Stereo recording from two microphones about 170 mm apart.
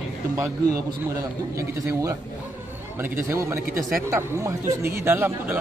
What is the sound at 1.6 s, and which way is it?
Speech, 20° right (ahead or behind).